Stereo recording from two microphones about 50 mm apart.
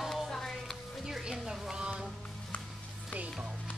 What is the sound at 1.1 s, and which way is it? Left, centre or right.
Music, centre.